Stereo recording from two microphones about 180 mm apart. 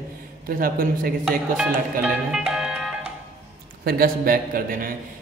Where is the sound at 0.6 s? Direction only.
55° right (ahead or behind).